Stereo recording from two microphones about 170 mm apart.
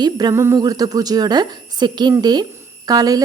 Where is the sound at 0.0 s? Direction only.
25° right (ahead or behind).